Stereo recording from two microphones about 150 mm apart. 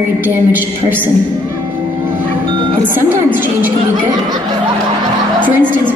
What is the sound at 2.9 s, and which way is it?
Speech, 15° right (ahead or behind).